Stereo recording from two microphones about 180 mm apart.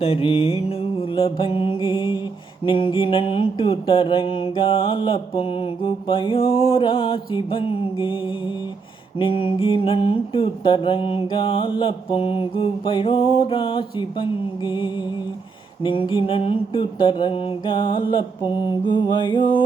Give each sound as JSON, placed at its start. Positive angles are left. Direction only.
{"t": 0.0, "sound": "mantra", "side_deg": 30}